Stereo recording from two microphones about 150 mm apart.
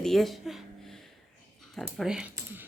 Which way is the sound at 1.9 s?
5° right (ahead or behind).